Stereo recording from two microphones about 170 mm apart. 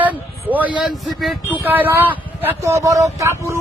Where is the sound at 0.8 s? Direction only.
Centre (ahead or behind).